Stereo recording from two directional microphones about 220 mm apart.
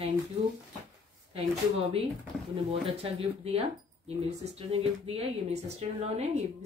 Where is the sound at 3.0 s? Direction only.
25° right (ahead or behind).